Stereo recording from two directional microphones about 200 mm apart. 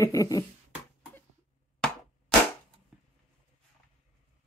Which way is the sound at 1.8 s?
5° left (ahead or behind).